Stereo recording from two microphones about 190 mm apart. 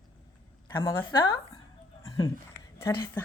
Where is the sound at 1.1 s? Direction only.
20° left (ahead or behind).